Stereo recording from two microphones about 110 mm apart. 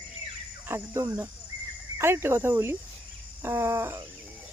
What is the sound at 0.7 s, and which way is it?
Speech, 25° right (ahead or behind).